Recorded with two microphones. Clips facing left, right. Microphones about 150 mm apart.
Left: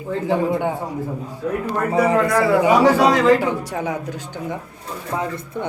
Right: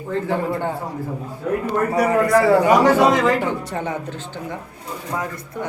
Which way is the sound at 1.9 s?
20° left (ahead or behind).